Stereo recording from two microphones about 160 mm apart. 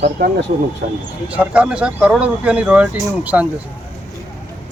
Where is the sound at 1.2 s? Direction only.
10° right (ahead or behind).